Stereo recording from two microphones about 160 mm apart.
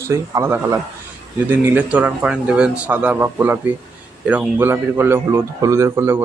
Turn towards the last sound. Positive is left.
turn(degrees=-15)  # may be behind; listen again after turning